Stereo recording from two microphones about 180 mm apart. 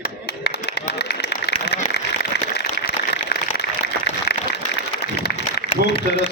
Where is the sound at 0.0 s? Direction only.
60° left (ahead or behind).